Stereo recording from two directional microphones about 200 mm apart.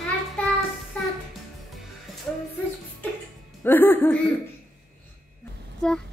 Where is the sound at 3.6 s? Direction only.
10° left (ahead or behind).